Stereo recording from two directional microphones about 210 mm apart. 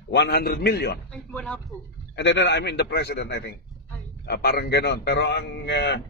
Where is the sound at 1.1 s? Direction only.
5° left (ahead or behind).